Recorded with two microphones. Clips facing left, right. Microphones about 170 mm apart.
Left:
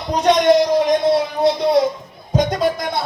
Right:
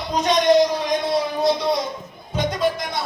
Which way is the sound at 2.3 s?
35° left (ahead or behind).